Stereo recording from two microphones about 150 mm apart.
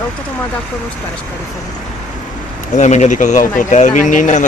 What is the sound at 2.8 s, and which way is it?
Speech, 50° left (ahead or behind).